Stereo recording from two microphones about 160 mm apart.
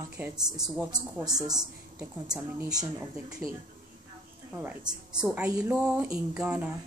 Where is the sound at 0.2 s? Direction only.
15° right (ahead or behind).